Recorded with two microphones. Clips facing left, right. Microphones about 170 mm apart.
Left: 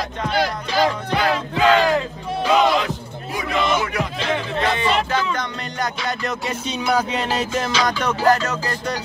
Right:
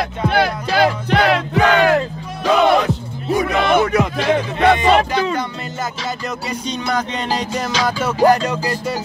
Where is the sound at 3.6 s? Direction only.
55° right (ahead or behind).